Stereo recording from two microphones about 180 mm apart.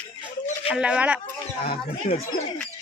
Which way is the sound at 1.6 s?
35° left (ahead or behind).